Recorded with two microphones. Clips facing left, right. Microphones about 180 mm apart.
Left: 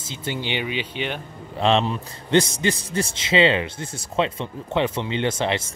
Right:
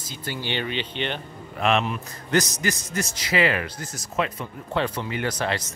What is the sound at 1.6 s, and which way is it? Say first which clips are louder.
A man's voice: left 3 dB; 30° left (ahead or behind).